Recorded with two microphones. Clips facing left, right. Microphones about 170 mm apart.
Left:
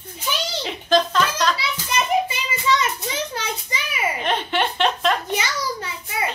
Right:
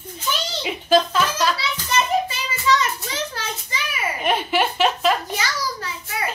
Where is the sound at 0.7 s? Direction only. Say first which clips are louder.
Right 2 dB; 5° right (ahead or behind).